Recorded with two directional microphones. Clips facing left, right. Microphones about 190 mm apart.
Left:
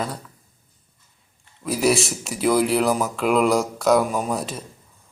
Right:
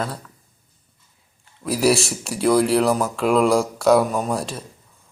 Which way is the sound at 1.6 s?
Centre (ahead or behind).